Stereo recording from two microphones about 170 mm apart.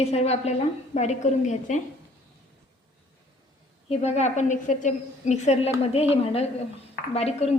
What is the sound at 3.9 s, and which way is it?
A woman's voice, 40° left (ahead or behind).